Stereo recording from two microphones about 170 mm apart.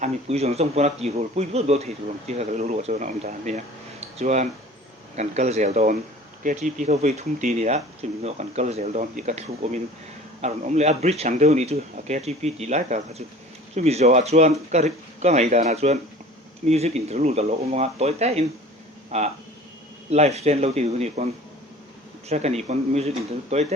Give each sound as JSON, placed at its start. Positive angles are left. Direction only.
{"t": 0.0, "sound": "speech", "side_deg": -40}
{"t": 4.0, "sound": "a sound", "side_deg": -40}
{"t": 5.1, "sound": "speech", "side_deg": -40}
{"t": 22.3, "sound": "speech", "side_deg": -40}